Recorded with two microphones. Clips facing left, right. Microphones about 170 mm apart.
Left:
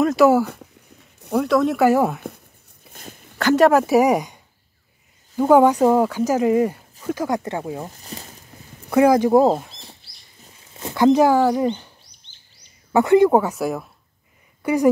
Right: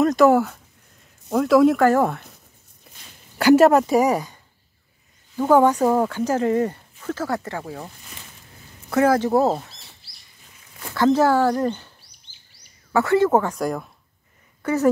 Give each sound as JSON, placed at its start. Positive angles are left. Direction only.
{"t": 0.0, "sound": "speech", "side_deg": 5}
{"t": 1.8, "sound": "speech", "side_deg": 10}
{"t": 2.9, "sound": "a sound", "side_deg": 50}
{"t": 3.3, "sound": "speech", "side_deg": -5}
{"t": 3.8, "sound": "speech", "side_deg": 10}
{"t": 7.8, "sound": "speech", "side_deg": 40}
{"t": 8.9, "sound": "speech", "side_deg": 15}
{"t": 10.7, "sound": "speech", "side_deg": 20}
{"t": 12.9, "sound": "speech", "side_deg": 20}